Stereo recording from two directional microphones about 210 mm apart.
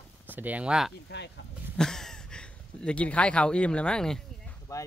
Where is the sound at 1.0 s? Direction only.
55° left (ahead or behind).